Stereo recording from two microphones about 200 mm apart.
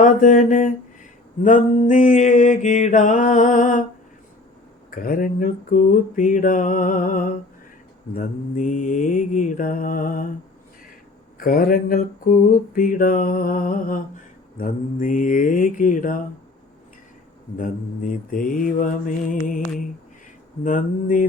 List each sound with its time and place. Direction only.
0.0 s mantra: 40° left (ahead or behind)
4.9 s mantra: 45° left (ahead or behind)
11.3 s mantra: 45° left (ahead or behind)
17.6 s mantra: 45° left (ahead or behind)
20.7 s mantra: 40° left (ahead or behind)